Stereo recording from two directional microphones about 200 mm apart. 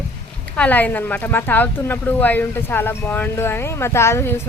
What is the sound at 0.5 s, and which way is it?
Speech, 5° left (ahead or behind).